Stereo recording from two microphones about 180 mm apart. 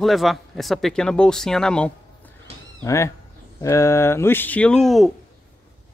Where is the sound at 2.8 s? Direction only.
15° left (ahead or behind).